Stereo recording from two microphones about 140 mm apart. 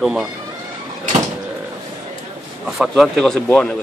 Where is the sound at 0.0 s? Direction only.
5° right (ahead or behind).